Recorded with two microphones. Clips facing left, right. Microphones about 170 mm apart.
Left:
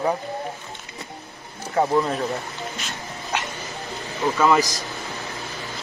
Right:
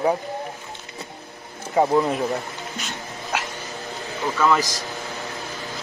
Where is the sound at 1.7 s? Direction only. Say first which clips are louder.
Right 2 dB; 15° right (ahead or behind).